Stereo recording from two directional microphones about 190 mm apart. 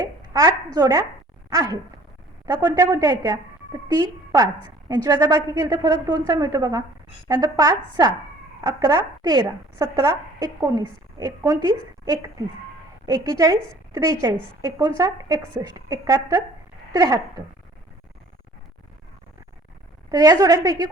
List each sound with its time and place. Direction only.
0.0 s a woman's voice: 20° right (ahead or behind)
1.5 s a sound: 20° right (ahead or behind)
2.5 s a woman's voice: 20° right (ahead or behind)
20.1 s a woman's voice: 20° right (ahead or behind)